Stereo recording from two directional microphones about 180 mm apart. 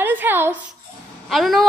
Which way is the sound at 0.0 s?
10° right (ahead or behind).